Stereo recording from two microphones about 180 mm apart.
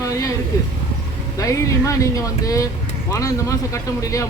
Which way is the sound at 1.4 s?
15° left (ahead or behind).